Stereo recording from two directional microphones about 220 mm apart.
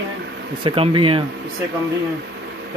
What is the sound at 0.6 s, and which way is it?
Speech, 25° right (ahead or behind).